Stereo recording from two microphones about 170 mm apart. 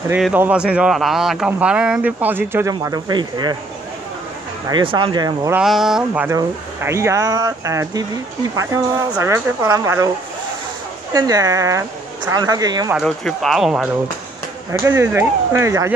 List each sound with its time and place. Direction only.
0.2 s speech: 10° right (ahead or behind)
2.7 s speech: 25° right (ahead or behind)
4.6 s speech: 25° right (ahead or behind)
5.5 s speech: 5° right (ahead or behind)
6.2 s speech: 15° right (ahead or behind)
9.1 s speech: 15° right (ahead or behind)
11.1 s speech: 20° right (ahead or behind)
12.9 s speech: centre (ahead or behind)
14.7 s speech: 15° right (ahead or behind)